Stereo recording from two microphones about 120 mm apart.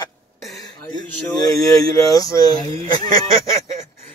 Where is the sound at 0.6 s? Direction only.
35° left (ahead or behind).